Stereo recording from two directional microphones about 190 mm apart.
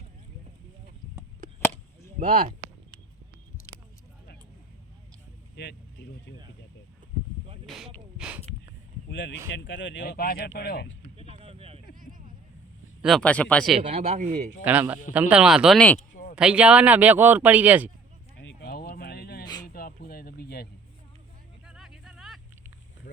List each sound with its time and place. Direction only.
2.1 s speech: 45° right (ahead or behind)
5.5 s vehicle: 60° left (ahead or behind)
9.0 s speech: 70° left (ahead or behind)
11.2 s a sound: 30° right (ahead or behind)
13.0 s speech: centre (ahead or behind)
13.8 s speech: 35° right (ahead or behind)
14.6 s speech: 10° right (ahead or behind)
16.0 s a sound: 45° left (ahead or behind)
16.3 s speech: 5° right (ahead or behind)
18.3 s a sound: 60° left (ahead or behind)
21.7 s a sound: centre (ahead or behind)
23.1 s vehicle: 65° left (ahead or behind)